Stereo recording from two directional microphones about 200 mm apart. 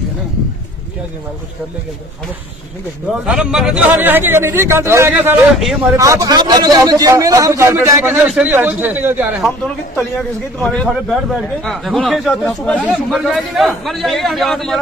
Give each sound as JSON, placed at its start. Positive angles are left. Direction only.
{"t": 3.1, "sound": "a man's voice", "side_deg": -5}
{"t": 5.9, "sound": "a man's voice", "side_deg": -15}
{"t": 10.6, "sound": "speech", "side_deg": 5}